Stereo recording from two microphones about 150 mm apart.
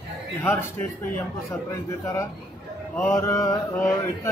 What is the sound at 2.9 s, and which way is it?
Mantra, 15° left (ahead or behind).